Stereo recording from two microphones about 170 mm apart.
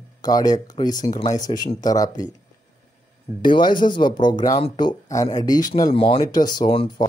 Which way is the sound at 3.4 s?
25° left (ahead or behind).